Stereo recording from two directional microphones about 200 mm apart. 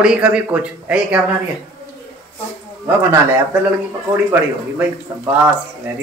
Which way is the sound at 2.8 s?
15° right (ahead or behind).